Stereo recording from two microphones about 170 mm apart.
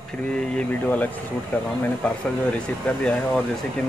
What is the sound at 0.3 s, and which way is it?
Speech, 5° left (ahead or behind).